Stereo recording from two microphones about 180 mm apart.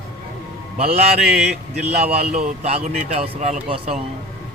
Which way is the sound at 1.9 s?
35° right (ahead or behind).